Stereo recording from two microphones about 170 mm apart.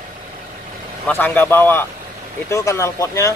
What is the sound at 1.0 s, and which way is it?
Speech, 10° left (ahead or behind).